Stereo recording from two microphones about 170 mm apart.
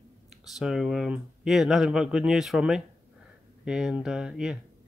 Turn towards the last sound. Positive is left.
turn(degrees=-5)  # may be behind; listen again after turning